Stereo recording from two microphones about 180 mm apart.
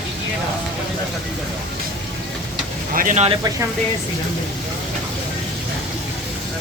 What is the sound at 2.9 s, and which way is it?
Speech, 45° right (ahead or behind).